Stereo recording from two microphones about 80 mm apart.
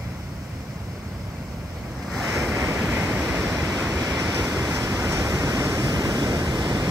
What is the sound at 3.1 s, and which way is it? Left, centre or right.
Waves, centre.